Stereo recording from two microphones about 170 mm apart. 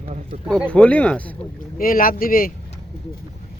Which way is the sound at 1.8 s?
55° left (ahead or behind).